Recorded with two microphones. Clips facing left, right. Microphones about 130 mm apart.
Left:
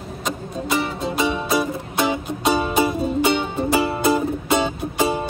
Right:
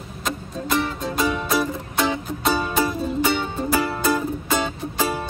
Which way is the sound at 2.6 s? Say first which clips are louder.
Left 3 dB; 20° left (ahead or behind).